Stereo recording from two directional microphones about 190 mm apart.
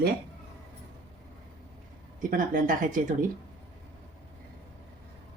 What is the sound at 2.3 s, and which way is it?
Speech, 45° right (ahead or behind).